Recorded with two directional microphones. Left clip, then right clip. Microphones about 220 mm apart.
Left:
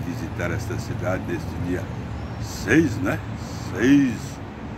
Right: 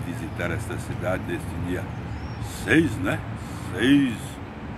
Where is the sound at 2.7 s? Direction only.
5° right (ahead or behind).